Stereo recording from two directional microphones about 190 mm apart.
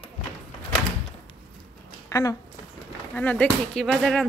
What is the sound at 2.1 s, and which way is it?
Speech, 15° left (ahead or behind).